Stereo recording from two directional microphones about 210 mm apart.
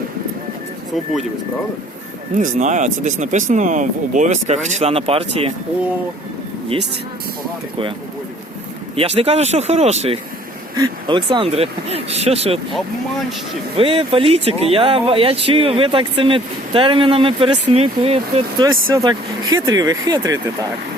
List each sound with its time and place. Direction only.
2.3 s speech: 35° right (ahead or behind)
9.0 s speech: 30° right (ahead or behind)
13.7 s speech: 25° right (ahead or behind)